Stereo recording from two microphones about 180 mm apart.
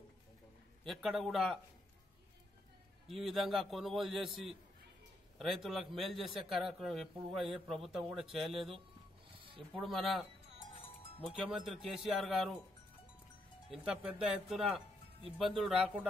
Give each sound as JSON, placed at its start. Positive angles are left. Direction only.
{"t": 0.8, "sound": "a man's voice", "side_deg": 0}
{"t": 3.1, "sound": "a man's voice", "side_deg": 0}
{"t": 9.3, "sound": "a sound", "side_deg": -30}
{"t": 9.8, "sound": "a man's voice", "side_deg": 0}
{"t": 11.3, "sound": "a man's voice", "side_deg": 0}
{"t": 13.7, "sound": "a man's voice", "side_deg": -5}